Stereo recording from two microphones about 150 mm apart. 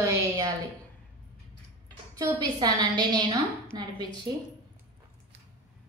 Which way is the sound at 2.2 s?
25° right (ahead or behind).